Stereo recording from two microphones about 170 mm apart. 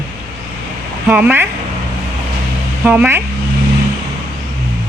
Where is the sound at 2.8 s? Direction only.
10° right (ahead or behind).